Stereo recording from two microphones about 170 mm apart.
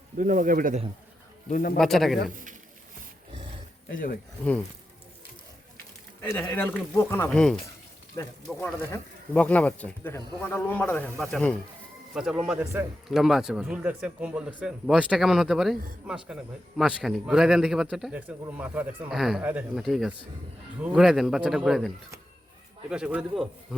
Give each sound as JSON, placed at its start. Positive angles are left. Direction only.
{"t": 0.2, "sound": "a man's voice", "side_deg": -50}
{"t": 1.5, "sound": "speech", "side_deg": 55}
{"t": 1.8, "sound": "speech", "side_deg": 0}
{"t": 3.9, "sound": "speech", "side_deg": 55}
{"t": 6.2, "sound": "speech", "side_deg": 10}